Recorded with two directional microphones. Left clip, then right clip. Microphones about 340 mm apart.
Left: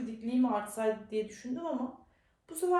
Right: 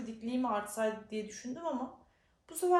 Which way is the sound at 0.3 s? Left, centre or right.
Centre.